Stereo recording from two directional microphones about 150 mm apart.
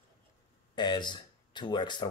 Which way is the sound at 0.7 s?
30° left (ahead or behind).